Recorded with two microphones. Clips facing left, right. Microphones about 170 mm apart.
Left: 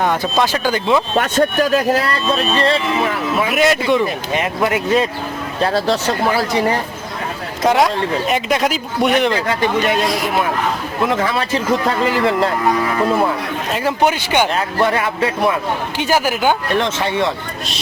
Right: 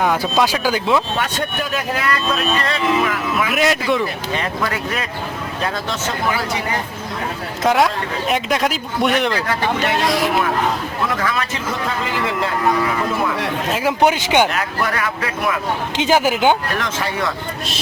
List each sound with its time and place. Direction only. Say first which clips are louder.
0.0 s speech: even; 5° right (ahead or behind)
1.1 s speech: left 7 dB; 40° left (ahead or behind)
3.5 s speech: left 3 dB; centre (ahead or behind)
4.4 s speech: left 6 dB; 25° left (ahead or behind)
7.6 s speech: left 2 dB; centre (ahead or behind)
11.0 s speech: left 5 dB; 25° left (ahead or behind)
14.0 s speech: right 1 dB; 15° right (ahead or behind)
14.5 s speech: left 5 dB; 30° left (ahead or behind)
16.0 s speech: right 2 dB; 20° right (ahead or behind)
16.7 s speech: left 5 dB; 25° left (ahead or behind)